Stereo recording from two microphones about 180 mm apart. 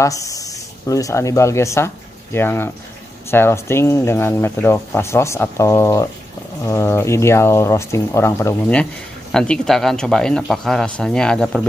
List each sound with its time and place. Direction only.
0.0 s speech: 20° left (ahead or behind); by 11.6 s 5° left (ahead or behind)